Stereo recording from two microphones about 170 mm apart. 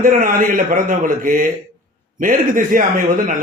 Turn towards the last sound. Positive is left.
turn(degrees=-50)  # may be behind; listen again after turning